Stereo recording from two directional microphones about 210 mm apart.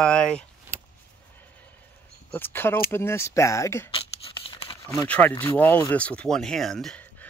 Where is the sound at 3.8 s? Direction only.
25° left (ahead or behind).